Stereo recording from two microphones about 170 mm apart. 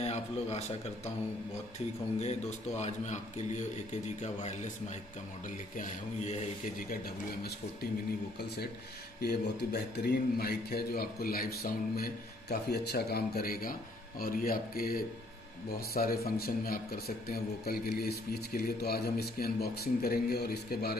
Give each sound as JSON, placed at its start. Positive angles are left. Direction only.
{"t": 0.0, "sound": "a man's voice", "side_deg": 40}
{"t": 2.1, "sound": "a man's voice", "side_deg": 40}
{"t": 9.2, "sound": "a man's voice", "side_deg": 65}